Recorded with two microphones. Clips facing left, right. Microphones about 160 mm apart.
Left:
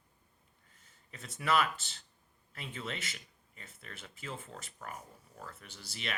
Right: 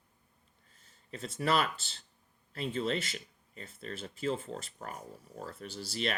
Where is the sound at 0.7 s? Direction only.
30° right (ahead or behind).